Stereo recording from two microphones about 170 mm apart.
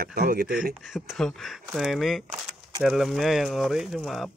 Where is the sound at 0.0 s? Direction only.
60° right (ahead or behind).